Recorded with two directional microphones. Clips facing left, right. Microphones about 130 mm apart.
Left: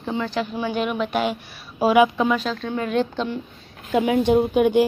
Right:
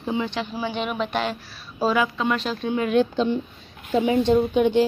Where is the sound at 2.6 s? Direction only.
10° right (ahead or behind).